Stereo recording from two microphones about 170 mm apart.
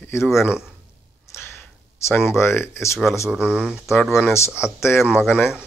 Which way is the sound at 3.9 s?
10° left (ahead or behind).